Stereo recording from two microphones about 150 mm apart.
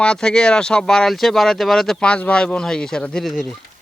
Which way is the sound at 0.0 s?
5° left (ahead or behind).